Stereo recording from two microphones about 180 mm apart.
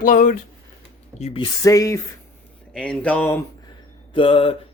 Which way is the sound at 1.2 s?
30° left (ahead or behind).